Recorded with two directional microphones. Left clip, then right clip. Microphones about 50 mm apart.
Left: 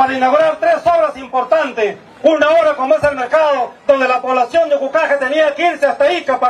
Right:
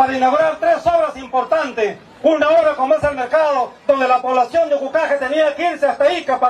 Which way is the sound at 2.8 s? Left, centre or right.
Left.